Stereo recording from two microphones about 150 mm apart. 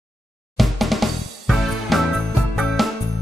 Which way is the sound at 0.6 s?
Centre (ahead or behind).